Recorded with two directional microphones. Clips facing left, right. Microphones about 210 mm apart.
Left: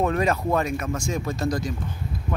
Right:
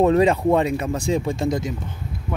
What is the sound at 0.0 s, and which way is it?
Speech, 25° right (ahead or behind).